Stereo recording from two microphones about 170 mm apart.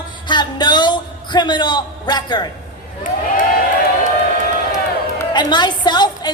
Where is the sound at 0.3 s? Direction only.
25° left (ahead or behind).